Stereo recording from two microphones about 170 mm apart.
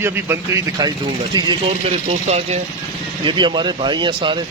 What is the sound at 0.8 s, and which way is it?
Speech, 25° right (ahead or behind).